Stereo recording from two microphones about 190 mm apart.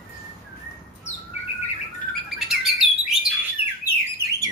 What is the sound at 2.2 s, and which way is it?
Bird, centre (ahead or behind).